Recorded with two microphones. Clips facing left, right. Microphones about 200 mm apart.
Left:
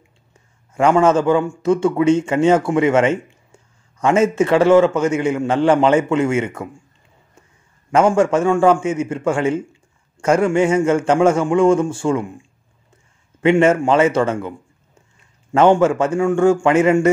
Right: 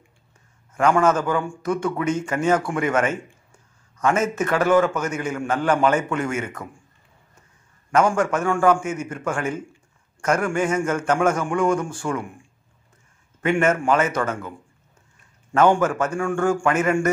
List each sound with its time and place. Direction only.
0.7 s a man's voice: 25° left (ahead or behind)
7.9 s a man's voice: 25° left (ahead or behind)
15.5 s a man's voice: 25° left (ahead or behind)